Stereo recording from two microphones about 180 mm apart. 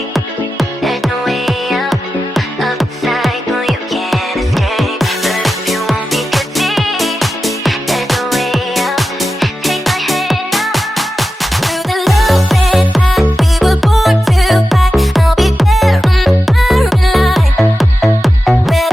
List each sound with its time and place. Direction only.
0.8 s music: centre (ahead or behind)